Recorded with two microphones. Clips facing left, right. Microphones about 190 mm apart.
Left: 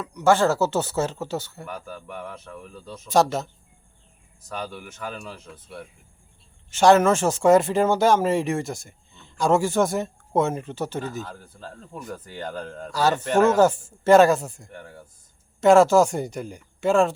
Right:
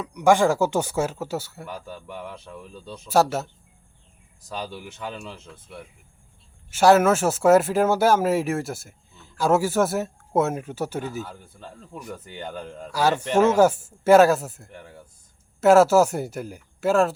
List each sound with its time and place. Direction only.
0.0 s speech: 15° right (ahead or behind)
2.5 s speech: 25° right (ahead or behind)
3.1 s speech: 5° right (ahead or behind)
4.6 s speech: 25° right (ahead or behind)
6.7 s speech: 5° right (ahead or behind)